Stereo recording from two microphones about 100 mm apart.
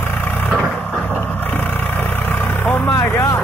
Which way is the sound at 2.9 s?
25° left (ahead or behind).